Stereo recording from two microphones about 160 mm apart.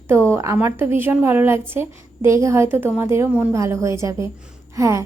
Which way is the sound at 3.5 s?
20° right (ahead or behind).